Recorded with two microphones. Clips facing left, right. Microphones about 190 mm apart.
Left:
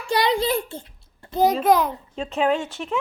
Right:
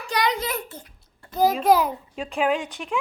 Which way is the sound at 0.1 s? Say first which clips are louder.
Left 4 dB; 30° left (ahead or behind).